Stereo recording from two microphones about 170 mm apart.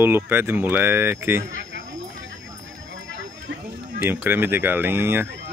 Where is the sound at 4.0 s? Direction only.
10° right (ahead or behind).